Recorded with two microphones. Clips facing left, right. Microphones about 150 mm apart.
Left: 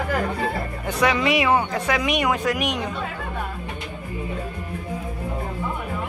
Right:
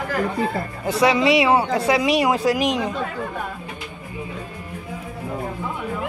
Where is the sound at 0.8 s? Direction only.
30° right (ahead or behind).